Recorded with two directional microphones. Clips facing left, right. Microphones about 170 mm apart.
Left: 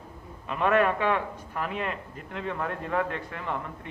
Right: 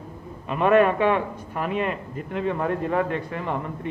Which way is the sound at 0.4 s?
15° right (ahead or behind).